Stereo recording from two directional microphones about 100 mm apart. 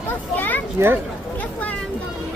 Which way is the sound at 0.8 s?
25° right (ahead or behind).